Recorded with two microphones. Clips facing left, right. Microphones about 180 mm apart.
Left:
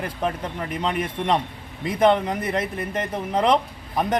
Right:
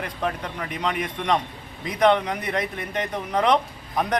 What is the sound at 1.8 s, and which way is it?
Speech, centre (ahead or behind).